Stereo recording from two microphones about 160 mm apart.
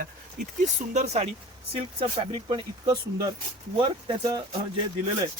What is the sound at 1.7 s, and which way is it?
Speech, 35° right (ahead or behind).